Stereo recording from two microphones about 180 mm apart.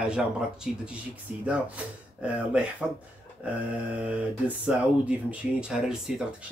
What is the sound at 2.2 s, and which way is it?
Speech, 5° right (ahead or behind).